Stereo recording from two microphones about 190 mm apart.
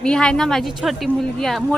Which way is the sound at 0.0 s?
5° left (ahead or behind).